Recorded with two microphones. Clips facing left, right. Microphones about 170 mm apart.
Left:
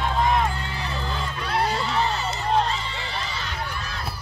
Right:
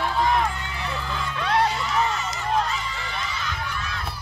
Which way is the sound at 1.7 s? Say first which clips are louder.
Even; 35° left (ahead or behind).